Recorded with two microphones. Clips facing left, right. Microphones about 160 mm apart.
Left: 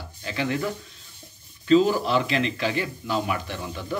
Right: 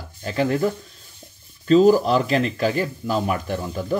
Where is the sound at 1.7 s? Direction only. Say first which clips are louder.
Right 5 dB; 40° right (ahead or behind).